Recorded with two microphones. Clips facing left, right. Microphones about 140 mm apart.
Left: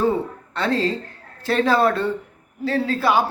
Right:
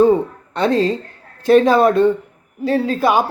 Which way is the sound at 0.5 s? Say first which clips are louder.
Right 6 dB; 20° right (ahead or behind).